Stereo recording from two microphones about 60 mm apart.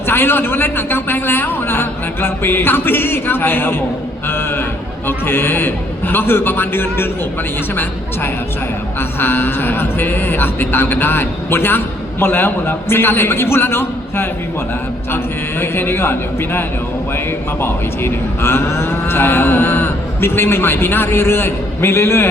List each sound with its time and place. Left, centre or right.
0.1 s speech: left
4.3 s a sound: left
5.0 s speech: left
9.0 s speech: left
15.6 s speech: left